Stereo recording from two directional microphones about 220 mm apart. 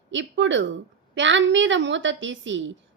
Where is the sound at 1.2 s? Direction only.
55° right (ahead or behind).